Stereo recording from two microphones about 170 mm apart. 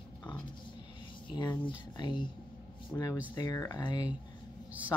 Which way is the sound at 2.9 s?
5° left (ahead or behind).